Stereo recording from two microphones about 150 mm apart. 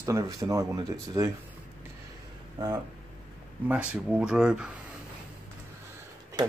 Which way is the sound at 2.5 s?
25° right (ahead or behind).